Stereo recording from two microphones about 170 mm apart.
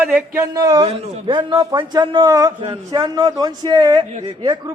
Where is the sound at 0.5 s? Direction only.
20° right (ahead or behind).